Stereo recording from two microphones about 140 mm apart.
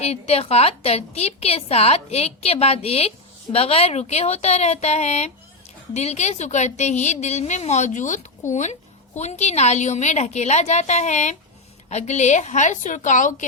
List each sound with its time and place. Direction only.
0.0 s a woman's voice: 50° left (ahead or behind); by 13.4 s 65° left (ahead or behind)